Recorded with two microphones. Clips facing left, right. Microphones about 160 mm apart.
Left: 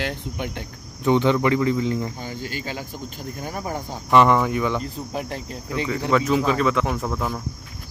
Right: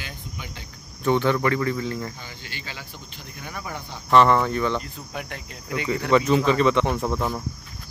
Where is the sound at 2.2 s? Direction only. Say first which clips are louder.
Left 9 dB; 45° left (ahead or behind).